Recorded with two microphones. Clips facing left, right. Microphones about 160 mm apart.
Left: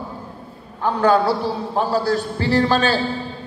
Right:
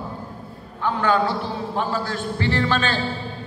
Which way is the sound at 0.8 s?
40° left (ahead or behind).